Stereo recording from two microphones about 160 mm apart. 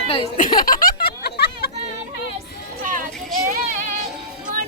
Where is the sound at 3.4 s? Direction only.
55° right (ahead or behind).